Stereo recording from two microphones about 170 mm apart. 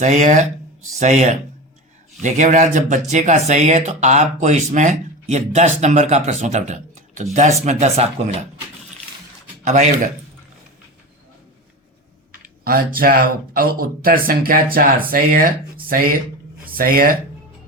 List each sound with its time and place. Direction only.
0.0 s speech: 50° right (ahead or behind)
12.6 s speech: 60° right (ahead or behind)